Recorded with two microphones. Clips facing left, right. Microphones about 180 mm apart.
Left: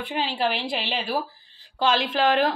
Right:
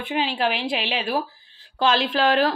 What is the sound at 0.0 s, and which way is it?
A woman's voice, 15° right (ahead or behind).